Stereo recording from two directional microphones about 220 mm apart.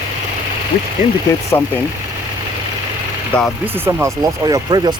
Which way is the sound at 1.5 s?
15° left (ahead or behind).